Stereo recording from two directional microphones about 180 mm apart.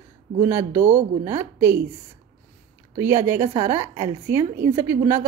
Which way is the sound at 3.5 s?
35° right (ahead or behind).